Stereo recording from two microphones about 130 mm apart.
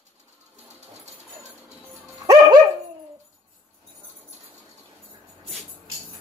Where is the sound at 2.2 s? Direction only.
30° right (ahead or behind).